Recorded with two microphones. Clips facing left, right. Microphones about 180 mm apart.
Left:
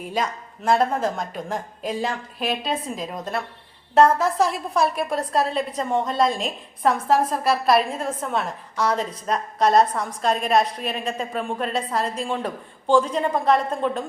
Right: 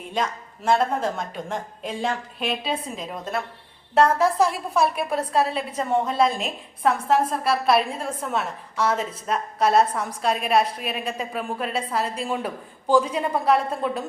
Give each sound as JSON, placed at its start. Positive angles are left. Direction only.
{"t": 0.0, "sound": "a woman's voice", "side_deg": 5}
{"t": 4.7, "sound": "a woman's voice", "side_deg": -5}